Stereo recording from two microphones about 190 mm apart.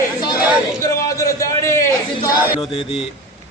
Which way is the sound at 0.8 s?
20° left (ahead or behind).